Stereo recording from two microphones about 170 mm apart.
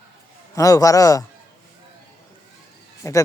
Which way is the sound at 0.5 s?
20° left (ahead or behind).